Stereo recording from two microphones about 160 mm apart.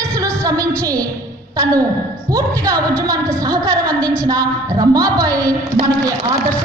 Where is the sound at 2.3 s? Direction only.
20° right (ahead or behind).